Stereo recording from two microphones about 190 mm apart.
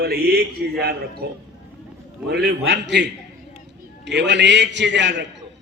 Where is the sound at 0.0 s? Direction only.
55° right (ahead or behind).